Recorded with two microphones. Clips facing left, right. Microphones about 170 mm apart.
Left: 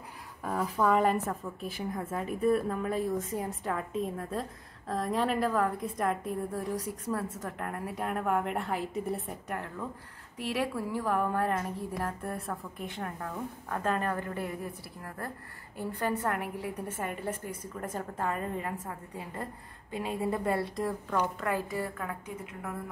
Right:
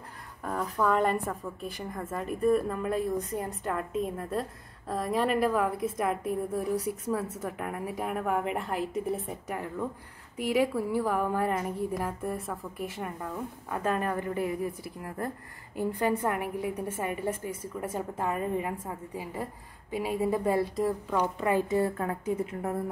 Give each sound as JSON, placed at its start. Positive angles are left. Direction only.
{"t": 0.4, "sound": "a woman's voice", "side_deg": 0}
{"t": 21.4, "sound": "a woman's voice", "side_deg": -20}